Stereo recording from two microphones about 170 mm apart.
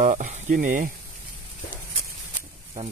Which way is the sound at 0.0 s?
45° right (ahead or behind).